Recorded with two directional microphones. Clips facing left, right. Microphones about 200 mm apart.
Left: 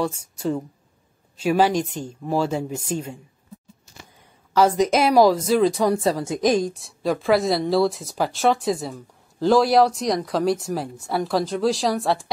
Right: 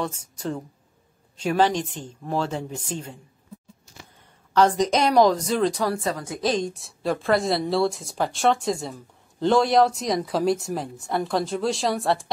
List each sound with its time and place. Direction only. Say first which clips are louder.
0.0 s speech: left 4 dB; 5° left (ahead or behind)
4.6 s speech: left 2 dB; 5° left (ahead or behind)
5.8 s a woman's voice: left 5 dB; 20° left (ahead or behind)
6.4 s speech: left 4 dB; 10° left (ahead or behind)
6.7 s speech: left 2 dB; centre (ahead or behind)